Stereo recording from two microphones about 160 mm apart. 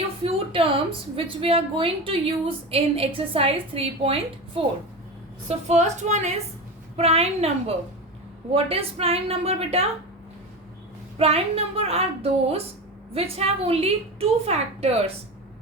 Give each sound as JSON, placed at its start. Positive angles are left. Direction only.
{"t": 0.2, "sound": "a sound", "side_deg": -35}
{"t": 1.1, "sound": "a woman's voice", "side_deg": -35}
{"t": 11.2, "sound": "a woman's voice", "side_deg": -40}